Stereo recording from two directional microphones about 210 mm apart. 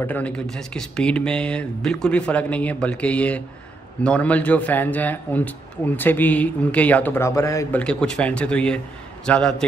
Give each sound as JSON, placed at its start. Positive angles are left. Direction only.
{"t": 0.0, "sound": "speech", "side_deg": 5}